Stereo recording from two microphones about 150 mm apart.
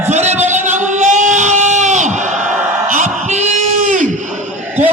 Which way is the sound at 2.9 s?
55° right (ahead or behind).